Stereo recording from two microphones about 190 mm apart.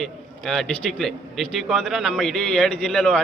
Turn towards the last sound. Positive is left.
turn(degrees=0)  # may be behind; listen again after turning